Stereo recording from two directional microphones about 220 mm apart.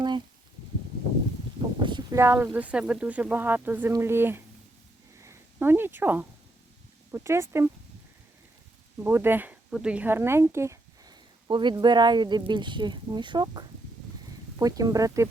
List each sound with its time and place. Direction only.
1.8 s speech: 20° right (ahead or behind)
5.2 s a sound: 10° right (ahead or behind)
7.1 s speech: 10° right (ahead or behind)
9.0 s speech: 10° right (ahead or behind)